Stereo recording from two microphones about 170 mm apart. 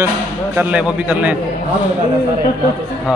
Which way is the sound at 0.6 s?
10° right (ahead or behind).